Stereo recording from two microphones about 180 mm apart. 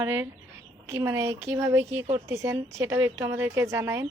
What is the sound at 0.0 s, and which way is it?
Speech, 15° right (ahead or behind).